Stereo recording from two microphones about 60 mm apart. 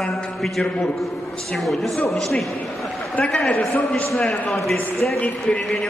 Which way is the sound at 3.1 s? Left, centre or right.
Centre.